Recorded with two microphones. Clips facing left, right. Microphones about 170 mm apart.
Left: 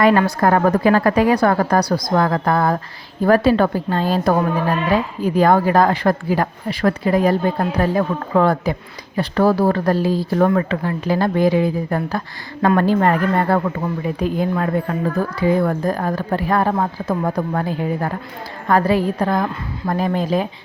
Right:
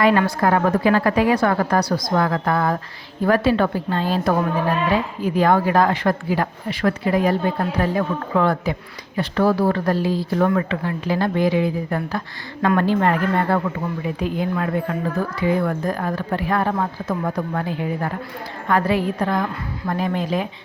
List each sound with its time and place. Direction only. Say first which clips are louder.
0.0 s a woman's voice: left 2 dB; 40° left (ahead or behind)